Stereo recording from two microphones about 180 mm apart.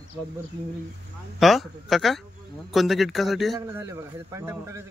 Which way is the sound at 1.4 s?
Centre (ahead or behind).